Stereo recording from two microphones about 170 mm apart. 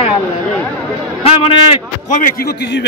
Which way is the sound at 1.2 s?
30° left (ahead or behind).